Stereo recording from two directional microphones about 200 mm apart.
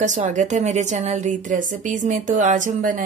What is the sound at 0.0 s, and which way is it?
A woman's voice, 35° right (ahead or behind).